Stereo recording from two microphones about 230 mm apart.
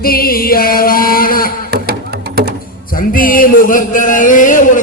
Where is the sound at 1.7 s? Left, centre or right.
Right.